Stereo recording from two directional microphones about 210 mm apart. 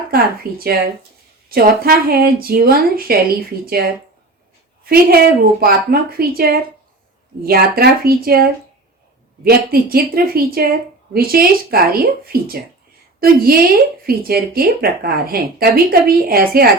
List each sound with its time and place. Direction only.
0.4 s speech: 45° right (ahead or behind)
4.9 s speech: 45° right (ahead or behind)